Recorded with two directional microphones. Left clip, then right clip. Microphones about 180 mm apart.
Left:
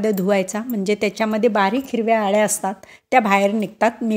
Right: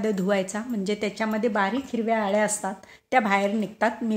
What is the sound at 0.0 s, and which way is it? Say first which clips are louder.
Speech: left 6 dB; 30° left (ahead or behind).